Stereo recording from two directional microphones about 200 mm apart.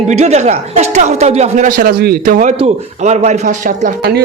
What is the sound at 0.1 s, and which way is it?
A man's voice, 35° right (ahead or behind).